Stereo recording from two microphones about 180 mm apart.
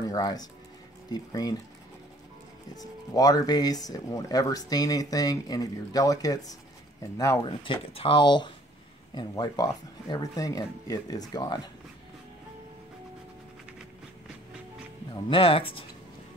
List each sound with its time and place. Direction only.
0.0 s speech: 20° left (ahead or behind)
2.8 s speech: 20° left (ahead or behind)
7.4 s speech: 30° left (ahead or behind)
15.2 s speech: 30° left (ahead or behind)